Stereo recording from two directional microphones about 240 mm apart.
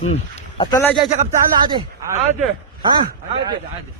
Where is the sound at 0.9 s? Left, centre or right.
Right.